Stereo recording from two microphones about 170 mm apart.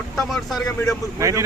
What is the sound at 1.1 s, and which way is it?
Speech, 20° right (ahead or behind).